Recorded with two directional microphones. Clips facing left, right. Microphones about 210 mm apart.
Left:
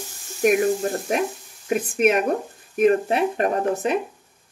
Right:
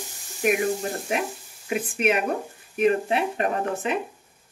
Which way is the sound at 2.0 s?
45° left (ahead or behind).